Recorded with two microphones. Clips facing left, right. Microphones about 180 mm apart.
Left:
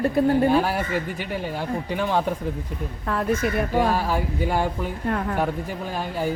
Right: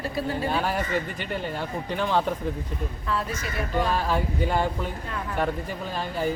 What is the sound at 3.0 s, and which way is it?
Speech, 55° left (ahead or behind).